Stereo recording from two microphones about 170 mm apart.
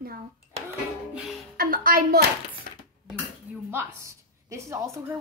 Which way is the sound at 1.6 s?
55° right (ahead or behind).